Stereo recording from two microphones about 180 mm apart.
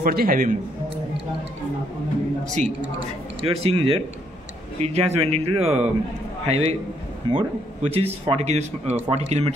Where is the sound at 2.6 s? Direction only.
40° right (ahead or behind).